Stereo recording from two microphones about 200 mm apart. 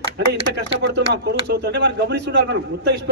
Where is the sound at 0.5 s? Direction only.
60° right (ahead or behind).